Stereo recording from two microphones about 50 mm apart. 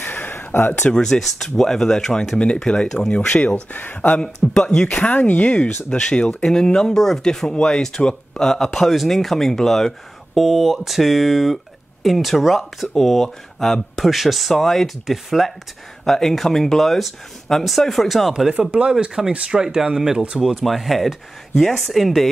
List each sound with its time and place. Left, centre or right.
0.0 s a sound: left
0.9 s speech: centre
2.3 s speech: centre; by 4.2 s left
4.2 s speech: centre
5.0 s speech: left
5.9 s speech: centre
18.7 s speech: right; by 22.3 s centre